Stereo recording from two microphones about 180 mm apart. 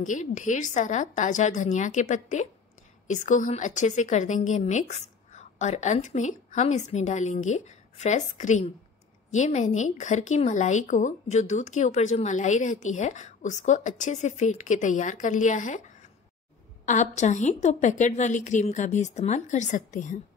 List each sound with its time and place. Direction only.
0.0 s a woman's voice: 45° left (ahead or behind)
16.8 s a woman's voice: 40° left (ahead or behind)